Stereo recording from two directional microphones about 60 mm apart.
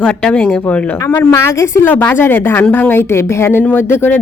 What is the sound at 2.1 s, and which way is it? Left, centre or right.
Speech, left.